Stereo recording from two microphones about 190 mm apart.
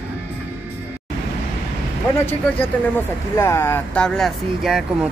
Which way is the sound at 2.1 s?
10° left (ahead or behind).